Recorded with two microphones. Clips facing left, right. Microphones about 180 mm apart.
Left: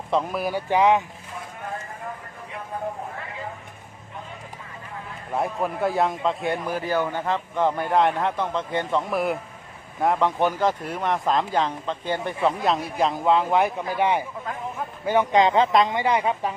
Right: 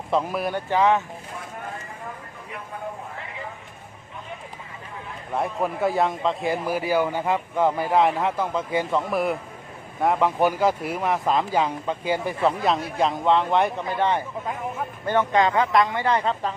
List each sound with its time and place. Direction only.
0.1 s speech: centre (ahead or behind)
0.7 s speech: 15° left (ahead or behind)
5.3 s speech: centre (ahead or behind)